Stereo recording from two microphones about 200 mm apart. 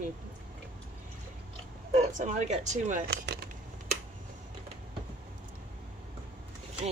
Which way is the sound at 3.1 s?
55° right (ahead or behind).